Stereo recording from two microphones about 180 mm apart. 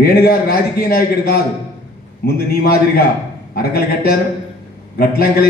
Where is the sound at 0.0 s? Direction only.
60° left (ahead or behind).